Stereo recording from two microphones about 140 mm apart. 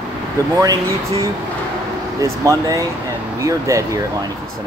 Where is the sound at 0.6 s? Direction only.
25° right (ahead or behind).